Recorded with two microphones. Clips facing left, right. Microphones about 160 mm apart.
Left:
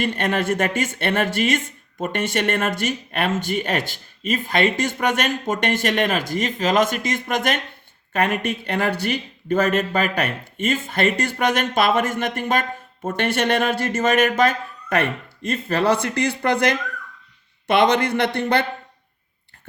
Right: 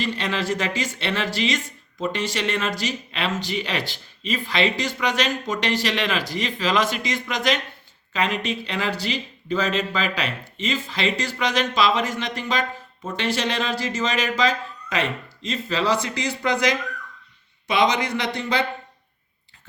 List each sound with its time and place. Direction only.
0.0 s speech: 55° left (ahead or behind)